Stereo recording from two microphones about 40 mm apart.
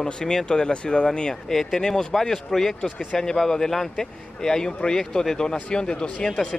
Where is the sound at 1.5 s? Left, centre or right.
Centre.